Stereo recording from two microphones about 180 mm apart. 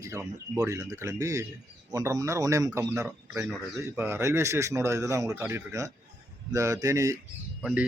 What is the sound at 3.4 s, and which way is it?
A man's voice, 5° right (ahead or behind).